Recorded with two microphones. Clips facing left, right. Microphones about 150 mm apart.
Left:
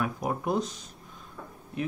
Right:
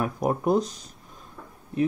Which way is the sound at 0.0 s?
40° right (ahead or behind).